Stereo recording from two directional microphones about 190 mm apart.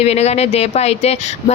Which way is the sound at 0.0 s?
35° left (ahead or behind).